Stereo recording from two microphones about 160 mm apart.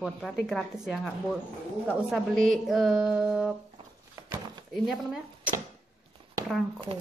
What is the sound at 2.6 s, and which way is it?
Speech, 5° right (ahead or behind).